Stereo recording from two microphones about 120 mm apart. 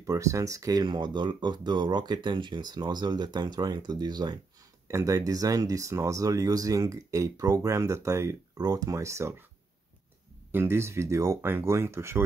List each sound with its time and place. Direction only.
0.0 s speech: 25° right (ahead or behind)
4.8 s speech: 25° right (ahead or behind)
10.5 s speech: 20° right (ahead or behind)